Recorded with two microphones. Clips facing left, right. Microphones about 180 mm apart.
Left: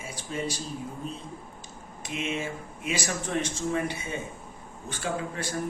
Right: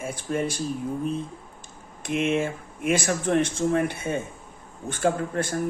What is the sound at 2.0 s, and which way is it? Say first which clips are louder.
Speech: right 8 dB; 55° right (ahead or behind).